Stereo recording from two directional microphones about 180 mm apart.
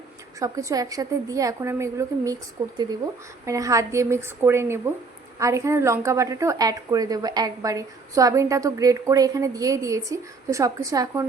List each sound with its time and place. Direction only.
0.3 s a woman's voice: 20° right (ahead or behind)